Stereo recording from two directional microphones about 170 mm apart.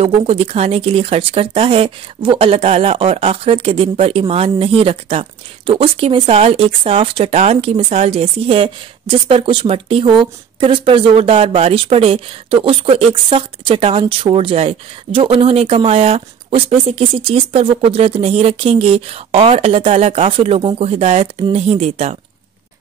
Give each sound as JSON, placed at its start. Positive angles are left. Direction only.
{"t": 0.0, "sound": "speech", "side_deg": -35}